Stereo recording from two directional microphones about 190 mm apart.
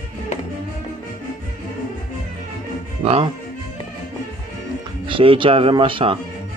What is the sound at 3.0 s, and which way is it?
Speech, 30° right (ahead or behind).